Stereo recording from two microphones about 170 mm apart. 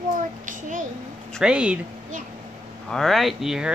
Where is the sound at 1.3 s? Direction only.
5° right (ahead or behind).